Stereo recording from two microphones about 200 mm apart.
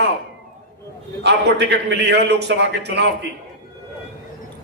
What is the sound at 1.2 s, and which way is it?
A man's voice, 55° right (ahead or behind).